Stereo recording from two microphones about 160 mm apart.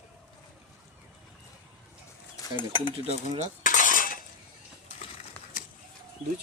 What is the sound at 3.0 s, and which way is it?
Speech, 40° right (ahead or behind).